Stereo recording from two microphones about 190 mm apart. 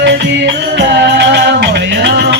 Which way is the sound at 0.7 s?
65° right (ahead or behind).